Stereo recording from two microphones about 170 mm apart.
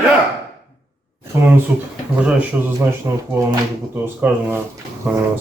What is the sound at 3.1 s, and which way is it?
Speech, 20° right (ahead or behind).